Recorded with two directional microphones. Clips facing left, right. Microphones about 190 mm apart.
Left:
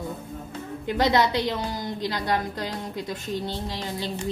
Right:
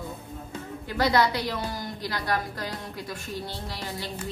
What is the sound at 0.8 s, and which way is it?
A woman's voice, 20° left (ahead or behind).